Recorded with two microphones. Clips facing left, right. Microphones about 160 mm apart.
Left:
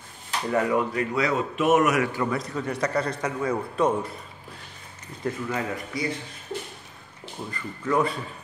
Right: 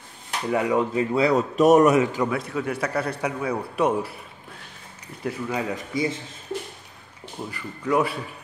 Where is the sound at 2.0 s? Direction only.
15° right (ahead or behind).